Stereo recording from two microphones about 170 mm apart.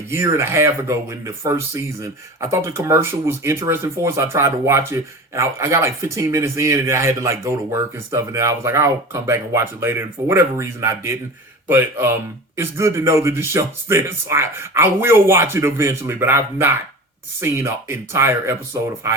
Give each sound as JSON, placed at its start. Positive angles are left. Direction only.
{"t": 0.1, "sound": "speech", "side_deg": -15}